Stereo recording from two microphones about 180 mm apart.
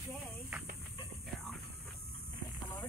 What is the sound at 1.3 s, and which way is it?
Hum, centre (ahead or behind).